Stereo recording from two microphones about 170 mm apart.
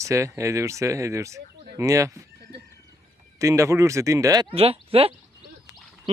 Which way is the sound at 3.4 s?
20° right (ahead or behind).